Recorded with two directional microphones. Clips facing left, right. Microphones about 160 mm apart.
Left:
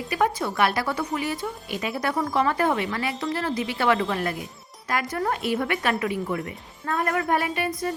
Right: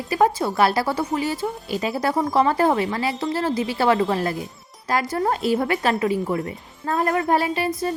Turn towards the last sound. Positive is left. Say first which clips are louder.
# right 4 dB
turn(degrees=-30)  # may be behind; listen again after turning